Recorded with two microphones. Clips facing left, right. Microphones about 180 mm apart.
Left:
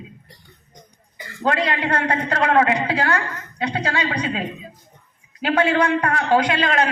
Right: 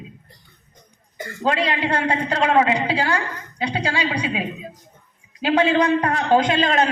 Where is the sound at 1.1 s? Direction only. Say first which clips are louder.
Right 7 dB; 50° right (ahead or behind).